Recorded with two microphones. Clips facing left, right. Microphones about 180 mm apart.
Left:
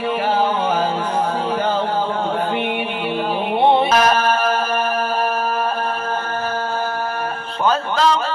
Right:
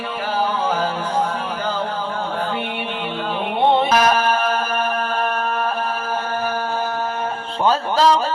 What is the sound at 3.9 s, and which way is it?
Music, 5° right (ahead or behind).